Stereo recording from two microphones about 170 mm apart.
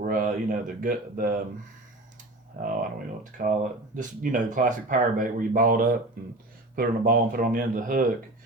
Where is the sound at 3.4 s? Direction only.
50° right (ahead or behind).